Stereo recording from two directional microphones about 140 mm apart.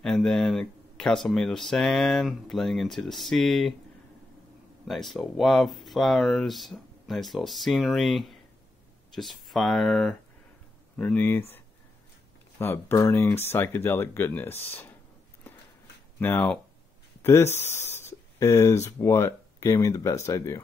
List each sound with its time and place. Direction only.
0.0 s speech: 5° left (ahead or behind)
4.8 s speech: centre (ahead or behind)
12.5 s speech: 15° left (ahead or behind)
16.2 s speech: 15° left (ahead or behind)